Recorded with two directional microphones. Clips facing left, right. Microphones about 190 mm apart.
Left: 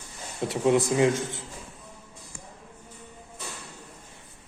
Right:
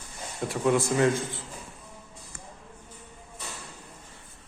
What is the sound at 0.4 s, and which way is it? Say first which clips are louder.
A man's voice: left 2 dB; 25° left (ahead or behind).